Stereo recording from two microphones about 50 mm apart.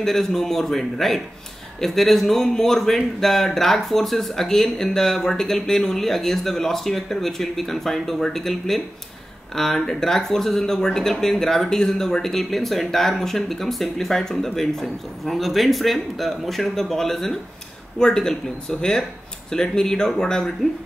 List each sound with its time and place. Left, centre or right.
0.0 s a man's voice: centre